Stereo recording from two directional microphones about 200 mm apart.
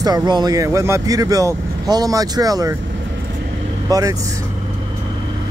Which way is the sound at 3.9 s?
15° right (ahead or behind).